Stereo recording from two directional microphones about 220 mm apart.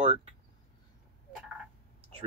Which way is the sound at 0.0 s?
30° right (ahead or behind).